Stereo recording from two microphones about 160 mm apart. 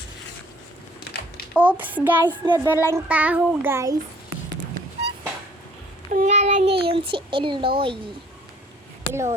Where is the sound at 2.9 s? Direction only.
10° right (ahead or behind).